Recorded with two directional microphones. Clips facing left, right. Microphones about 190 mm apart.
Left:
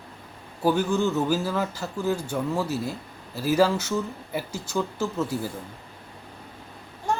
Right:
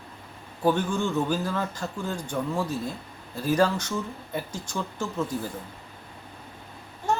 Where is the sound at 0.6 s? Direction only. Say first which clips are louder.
Left 2 dB; 5° left (ahead or behind).